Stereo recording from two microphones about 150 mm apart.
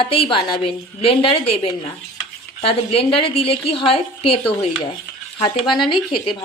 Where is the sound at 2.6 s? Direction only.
40° left (ahead or behind).